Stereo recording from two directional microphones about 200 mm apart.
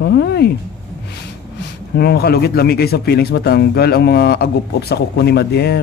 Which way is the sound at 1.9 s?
55° left (ahead or behind).